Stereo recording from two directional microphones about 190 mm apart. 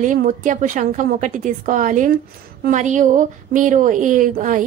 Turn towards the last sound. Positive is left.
turn(degrees=-40)  # may be behind; listen again after turning